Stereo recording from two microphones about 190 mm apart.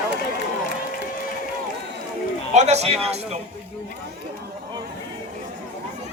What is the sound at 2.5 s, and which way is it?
Speech, 35° right (ahead or behind).